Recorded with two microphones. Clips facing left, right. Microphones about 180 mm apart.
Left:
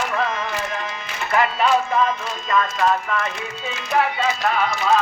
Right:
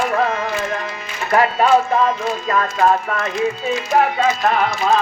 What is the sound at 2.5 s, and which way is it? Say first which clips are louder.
Speech: right 2 dB; 40° right (ahead or behind).